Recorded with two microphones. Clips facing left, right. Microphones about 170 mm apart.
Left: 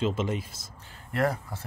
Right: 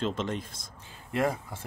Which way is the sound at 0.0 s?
5° left (ahead or behind).